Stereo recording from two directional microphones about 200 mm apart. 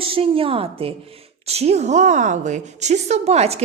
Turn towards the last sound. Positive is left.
turn(degrees=-30)  # may be behind; listen again after turning